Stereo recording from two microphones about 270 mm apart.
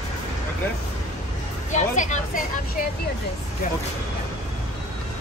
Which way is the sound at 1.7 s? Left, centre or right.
Left.